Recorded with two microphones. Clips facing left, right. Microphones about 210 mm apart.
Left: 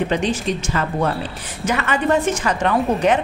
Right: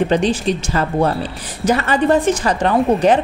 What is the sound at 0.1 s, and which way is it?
A woman's voice, 35° right (ahead or behind).